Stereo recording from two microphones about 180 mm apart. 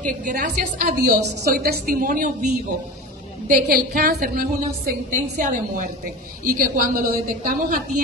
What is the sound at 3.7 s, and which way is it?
A woman's voice, 55° right (ahead or behind).